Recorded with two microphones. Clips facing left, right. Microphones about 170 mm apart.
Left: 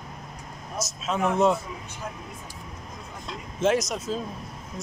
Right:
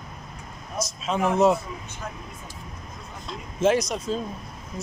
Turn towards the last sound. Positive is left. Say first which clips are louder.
# right 1 dB
turn(degrees=5)  # may be behind; listen again after turning